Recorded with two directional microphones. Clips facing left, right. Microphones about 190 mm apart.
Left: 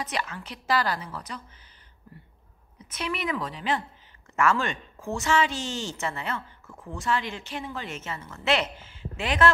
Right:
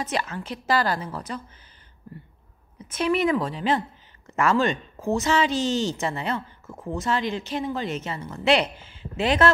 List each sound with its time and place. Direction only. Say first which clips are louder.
0.0 s a woman's voice: right 4 dB; 45° right (ahead or behind)
2.8 s a woman's voice: right 9 dB; 45° right (ahead or behind); by 9.4 s 25° right (ahead or behind)